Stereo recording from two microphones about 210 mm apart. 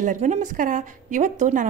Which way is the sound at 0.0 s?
35° right (ahead or behind).